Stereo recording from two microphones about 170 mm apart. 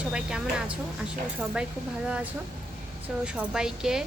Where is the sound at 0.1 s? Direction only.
5° right (ahead or behind).